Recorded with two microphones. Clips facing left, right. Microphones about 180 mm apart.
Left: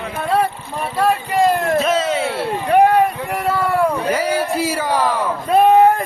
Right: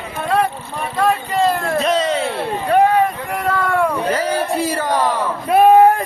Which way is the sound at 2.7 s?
10° left (ahead or behind).